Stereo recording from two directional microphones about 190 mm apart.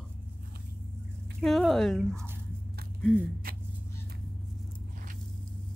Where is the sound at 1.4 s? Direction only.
Centre (ahead or behind).